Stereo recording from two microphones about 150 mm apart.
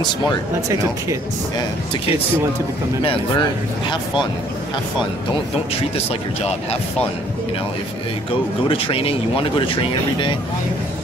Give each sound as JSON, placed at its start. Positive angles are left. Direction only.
{"t": 3.0, "sound": "speech", "side_deg": 35}
{"t": 8.6, "sound": "speech", "side_deg": 35}